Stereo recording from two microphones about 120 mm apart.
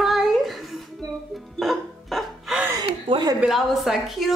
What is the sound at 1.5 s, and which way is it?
Music, centre (ahead or behind).